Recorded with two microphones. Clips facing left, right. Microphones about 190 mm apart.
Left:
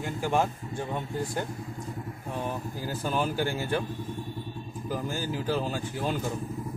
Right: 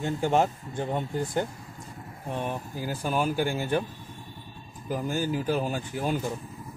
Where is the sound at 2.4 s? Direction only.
15° right (ahead or behind).